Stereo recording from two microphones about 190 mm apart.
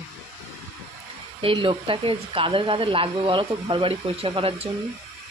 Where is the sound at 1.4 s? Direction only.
25° right (ahead or behind).